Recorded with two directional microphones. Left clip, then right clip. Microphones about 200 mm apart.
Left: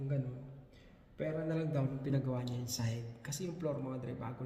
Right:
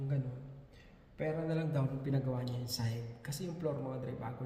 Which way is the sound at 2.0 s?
15° left (ahead or behind).